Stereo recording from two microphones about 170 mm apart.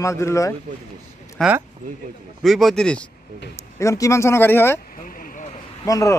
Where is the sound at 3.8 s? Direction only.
20° left (ahead or behind).